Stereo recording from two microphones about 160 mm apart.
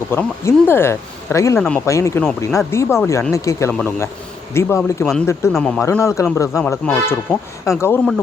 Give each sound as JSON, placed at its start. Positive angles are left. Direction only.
{"t": 0.1, "sound": "speech", "side_deg": 15}
{"t": 1.5, "sound": "speech", "side_deg": 5}
{"t": 1.8, "sound": "a man's voice", "side_deg": 20}
{"t": 5.5, "sound": "speech", "side_deg": 5}
{"t": 5.8, "sound": "a man's voice", "side_deg": 15}